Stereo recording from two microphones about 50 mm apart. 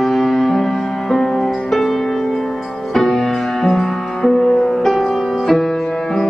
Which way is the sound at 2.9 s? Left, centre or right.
Centre.